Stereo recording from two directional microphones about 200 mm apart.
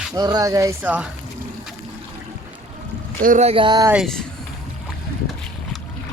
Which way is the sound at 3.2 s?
35° right (ahead or behind).